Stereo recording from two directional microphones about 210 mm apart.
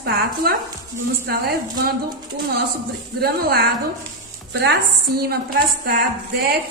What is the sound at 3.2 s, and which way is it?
A woman's voice, 45° right (ahead or behind).